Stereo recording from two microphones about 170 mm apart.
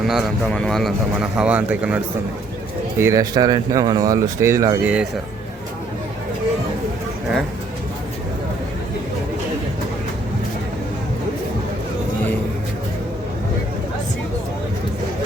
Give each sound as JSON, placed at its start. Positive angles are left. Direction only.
{"t": 0.1, "sound": "speech", "side_deg": 0}
{"t": 3.0, "sound": "speech", "side_deg": -20}